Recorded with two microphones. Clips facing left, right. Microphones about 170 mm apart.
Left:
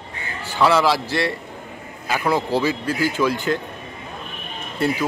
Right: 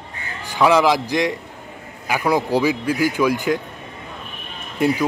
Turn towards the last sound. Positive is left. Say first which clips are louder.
# right 3 dB
turn(degrees=-15)  # may be behind; listen again after turning